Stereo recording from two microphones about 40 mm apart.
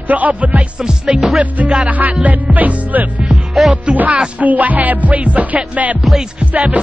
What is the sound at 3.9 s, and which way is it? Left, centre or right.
Music, right.